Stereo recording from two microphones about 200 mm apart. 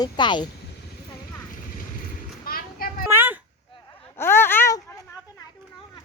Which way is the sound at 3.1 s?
10° right (ahead or behind).